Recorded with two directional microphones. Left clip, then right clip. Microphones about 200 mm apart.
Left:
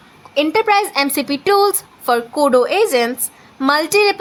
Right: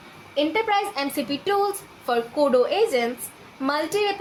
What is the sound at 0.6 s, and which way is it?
A woman's voice, 45° left (ahead or behind).